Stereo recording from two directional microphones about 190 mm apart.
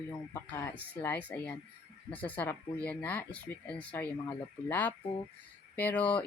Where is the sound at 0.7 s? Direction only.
10° left (ahead or behind).